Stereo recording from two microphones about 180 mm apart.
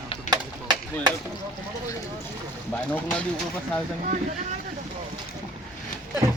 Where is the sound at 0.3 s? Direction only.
25° right (ahead or behind).